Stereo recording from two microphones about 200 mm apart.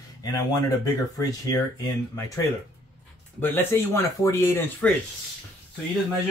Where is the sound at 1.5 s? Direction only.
15° left (ahead or behind).